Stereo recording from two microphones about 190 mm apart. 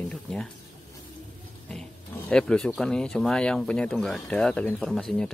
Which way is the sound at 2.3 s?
5° left (ahead or behind).